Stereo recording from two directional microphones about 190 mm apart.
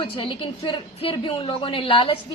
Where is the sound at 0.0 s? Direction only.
25° left (ahead or behind).